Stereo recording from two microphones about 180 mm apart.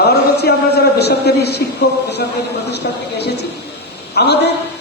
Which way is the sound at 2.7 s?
65° left (ahead or behind).